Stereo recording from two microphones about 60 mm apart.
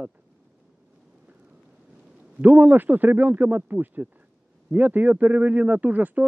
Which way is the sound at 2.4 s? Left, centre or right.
Right.